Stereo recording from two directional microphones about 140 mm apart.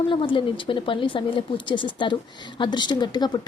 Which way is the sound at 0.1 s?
35° left (ahead or behind).